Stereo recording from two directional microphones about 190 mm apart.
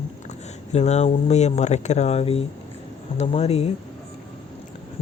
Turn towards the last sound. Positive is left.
turn(degrees=35)  # may be behind; listen again after turning